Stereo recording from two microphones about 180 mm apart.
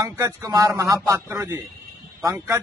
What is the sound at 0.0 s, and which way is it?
A man's voice, 20° right (ahead or behind).